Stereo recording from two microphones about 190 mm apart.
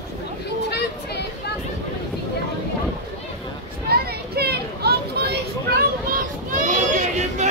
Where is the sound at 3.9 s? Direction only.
55° right (ahead or behind).